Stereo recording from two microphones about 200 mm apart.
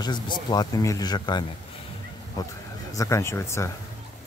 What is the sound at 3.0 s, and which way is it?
Speech, 15° left (ahead or behind).